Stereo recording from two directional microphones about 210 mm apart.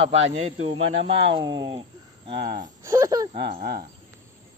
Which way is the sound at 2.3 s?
50° right (ahead or behind).